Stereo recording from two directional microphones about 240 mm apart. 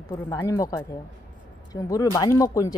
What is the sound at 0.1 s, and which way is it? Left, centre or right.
Speech, centre.